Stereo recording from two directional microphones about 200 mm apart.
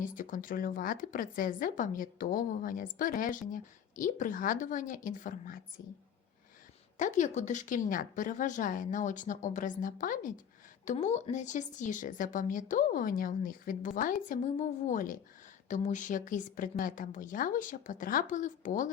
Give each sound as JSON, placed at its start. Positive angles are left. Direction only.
{"t": 0.0, "sound": "a woman's voice", "side_deg": 40}
{"t": 7.0, "sound": "a woman's voice", "side_deg": 35}